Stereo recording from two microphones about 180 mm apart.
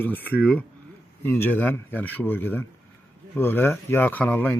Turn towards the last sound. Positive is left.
turn(degrees=10)  # may be behind; listen again after turning